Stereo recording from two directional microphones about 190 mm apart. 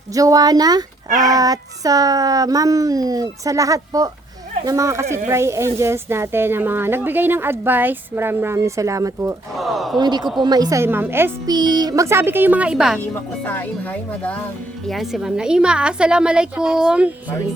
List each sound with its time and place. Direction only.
0.1 s speech: 20° right (ahead or behind)
9.6 s a woman's voice: centre (ahead or behind)
10.0 s speech: 20° right (ahead or behind); by 13.0 s 5° right (ahead or behind)
13.0 s a woman's voice: 10° left (ahead or behind)